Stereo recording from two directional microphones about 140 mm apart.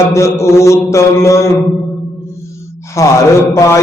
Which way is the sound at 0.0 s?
20° left (ahead or behind).